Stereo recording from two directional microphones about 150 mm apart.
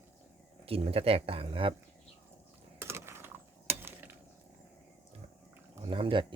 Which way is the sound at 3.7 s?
15° right (ahead or behind).